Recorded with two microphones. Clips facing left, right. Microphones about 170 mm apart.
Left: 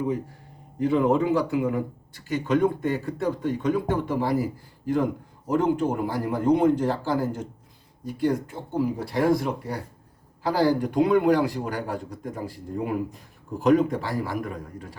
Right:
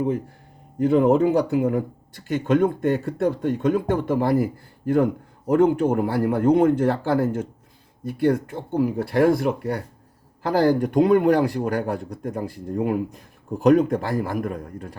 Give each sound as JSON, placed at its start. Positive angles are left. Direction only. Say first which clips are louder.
{"t": 0.8, "sound": "speech", "louder": "right 4 dB", "side_deg": -50}
{"t": 5.5, "sound": "speech", "louder": "right 5 dB", "side_deg": -60}